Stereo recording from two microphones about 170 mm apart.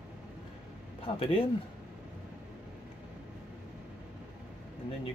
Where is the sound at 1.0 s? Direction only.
35° left (ahead or behind).